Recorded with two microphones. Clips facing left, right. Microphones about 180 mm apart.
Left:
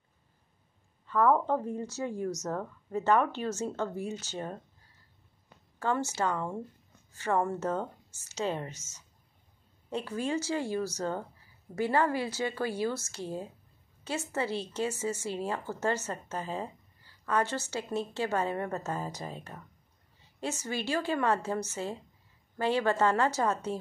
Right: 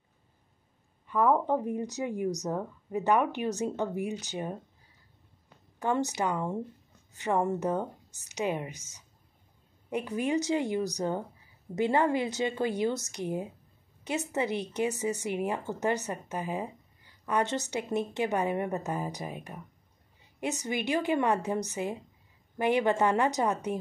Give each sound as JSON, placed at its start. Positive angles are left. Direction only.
{"t": 1.0, "sound": "a woman's voice", "side_deg": -15}
{"t": 5.8, "sound": "a woman's voice", "side_deg": -15}